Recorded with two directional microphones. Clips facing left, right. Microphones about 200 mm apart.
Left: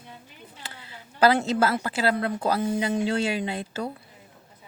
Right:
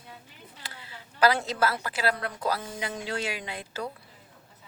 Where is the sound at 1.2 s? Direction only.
25° left (ahead or behind).